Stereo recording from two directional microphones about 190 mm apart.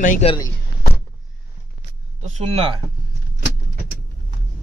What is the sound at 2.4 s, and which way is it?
Speech, 30° right (ahead or behind).